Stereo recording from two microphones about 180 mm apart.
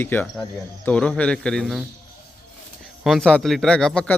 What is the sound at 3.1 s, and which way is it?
A man's voice, 5° left (ahead or behind).